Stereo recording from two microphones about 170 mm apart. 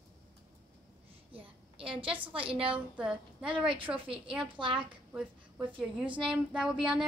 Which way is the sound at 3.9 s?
10° right (ahead or behind).